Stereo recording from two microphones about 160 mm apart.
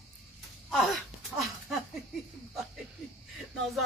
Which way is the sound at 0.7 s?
Centre (ahead or behind).